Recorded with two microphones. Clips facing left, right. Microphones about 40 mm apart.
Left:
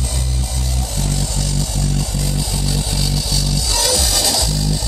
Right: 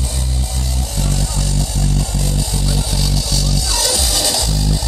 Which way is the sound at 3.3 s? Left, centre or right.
Centre.